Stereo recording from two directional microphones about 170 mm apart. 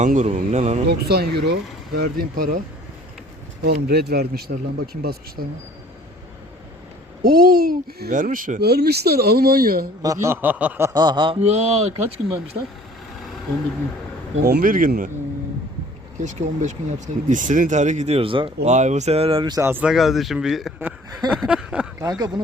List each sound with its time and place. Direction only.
0.0 s speech: 45° right (ahead or behind)
0.9 s speech: 70° right (ahead or behind)
2.0 s speech: 60° right (ahead or behind)
3.6 s speech: 65° right (ahead or behind)
7.2 s speech: 60° right (ahead or behind)
8.1 s speech: 50° right (ahead or behind)
10.0 s a sound: 20° right (ahead or behind)
10.9 s speech: 25° right (ahead or behind)
12.6 s a sound: 15° right (ahead or behind)
14.4 s speech: 60° right (ahead or behind)
16.2 s speech: 45° right (ahead or behind); by 19.5 s 30° right (ahead or behind)
19.5 s speech: 15° right (ahead or behind)
21.3 s a sound: 5° right (ahead or behind)
22.0 s speech: 20° right (ahead or behind)